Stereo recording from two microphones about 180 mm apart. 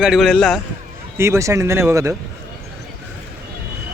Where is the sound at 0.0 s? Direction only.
Centre (ahead or behind).